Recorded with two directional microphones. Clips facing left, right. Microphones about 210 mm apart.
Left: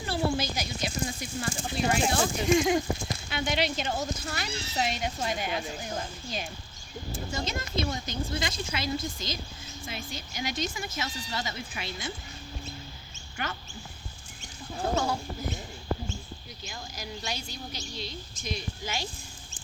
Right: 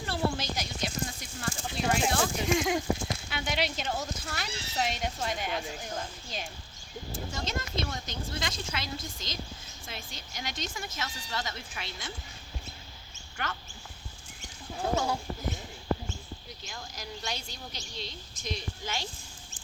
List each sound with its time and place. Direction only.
0.0 s a sound: 5° left (ahead or behind)
1.7 s speech: 5° left (ahead or behind)
13.3 s speech: 10° left (ahead or behind)
14.8 s speech: 10° right (ahead or behind)
16.6 s a woman's voice: 5° left (ahead or behind)